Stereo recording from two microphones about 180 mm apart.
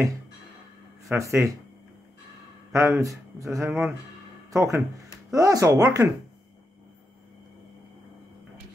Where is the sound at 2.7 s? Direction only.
15° right (ahead or behind).